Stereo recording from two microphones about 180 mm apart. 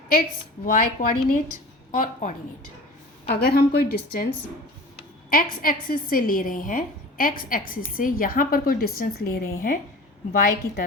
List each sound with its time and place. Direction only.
0.1 s a woman's voice: 50° left (ahead or behind)
3.2 s a woman's voice: 60° left (ahead or behind)
5.3 s a woman's voice: 50° left (ahead or behind)